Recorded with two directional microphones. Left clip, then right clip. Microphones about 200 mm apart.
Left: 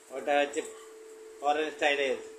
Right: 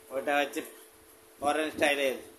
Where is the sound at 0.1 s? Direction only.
35° right (ahead or behind).